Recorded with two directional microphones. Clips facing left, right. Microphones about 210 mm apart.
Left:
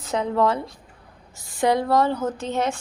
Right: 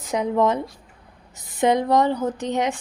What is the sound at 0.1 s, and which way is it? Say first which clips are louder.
A woman's voice: right 1 dB; 15° right (ahead or behind).